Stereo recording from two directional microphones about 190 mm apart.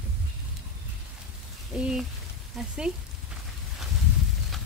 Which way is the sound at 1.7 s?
5° right (ahead or behind).